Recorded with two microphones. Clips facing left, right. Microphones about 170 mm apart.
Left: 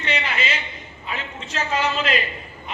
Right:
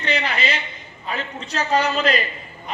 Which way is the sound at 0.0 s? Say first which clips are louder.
Right 2 dB; 40° right (ahead or behind).